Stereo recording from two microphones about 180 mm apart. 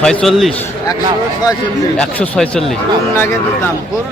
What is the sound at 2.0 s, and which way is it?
Speech, 5° left (ahead or behind).